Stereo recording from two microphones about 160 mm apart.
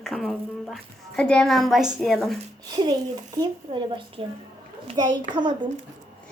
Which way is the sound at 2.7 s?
30° right (ahead or behind).